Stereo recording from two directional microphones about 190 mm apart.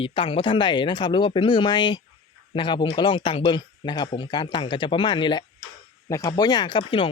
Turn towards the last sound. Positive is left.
turn(degrees=25)  # may be behind; listen again after turning